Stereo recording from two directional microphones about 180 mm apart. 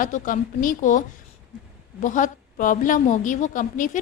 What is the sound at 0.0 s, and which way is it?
A woman's voice, 45° left (ahead or behind).